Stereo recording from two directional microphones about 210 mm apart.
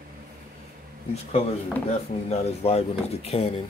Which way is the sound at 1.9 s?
30° left (ahead or behind).